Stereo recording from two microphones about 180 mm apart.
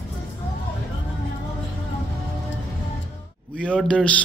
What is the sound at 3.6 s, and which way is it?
Speech, 5° left (ahead or behind).